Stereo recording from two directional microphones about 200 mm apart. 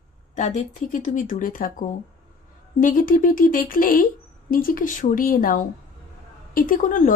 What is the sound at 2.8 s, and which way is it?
Speech, 45° left (ahead or behind).